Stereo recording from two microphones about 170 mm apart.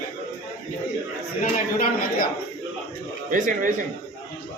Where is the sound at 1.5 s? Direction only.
60° left (ahead or behind).